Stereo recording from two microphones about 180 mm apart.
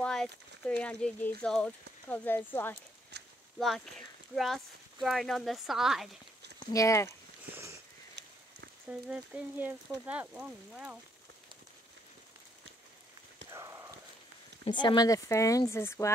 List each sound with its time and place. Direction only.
0.0 s speech: 5° left (ahead or behind)
3.5 s speech: centre (ahead or behind)
5.0 s speech: centre (ahead or behind)
6.7 s speech: 15° left (ahead or behind)
7.5 s sniff: 15° right (ahead or behind)
8.2 s a sound: 70° right (ahead or behind)
8.8 s speech: 5° right (ahead or behind)
13.5 s clip-clop: 20° right (ahead or behind)
14.6 s speech: 25° left (ahead or behind)